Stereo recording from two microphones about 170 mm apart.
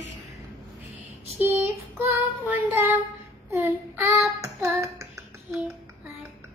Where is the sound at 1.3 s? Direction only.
10° right (ahead or behind).